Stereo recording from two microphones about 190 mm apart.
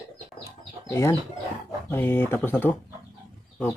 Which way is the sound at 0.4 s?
15° left (ahead or behind).